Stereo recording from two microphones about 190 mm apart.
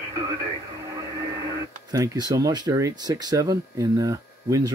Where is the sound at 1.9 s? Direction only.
20° right (ahead or behind).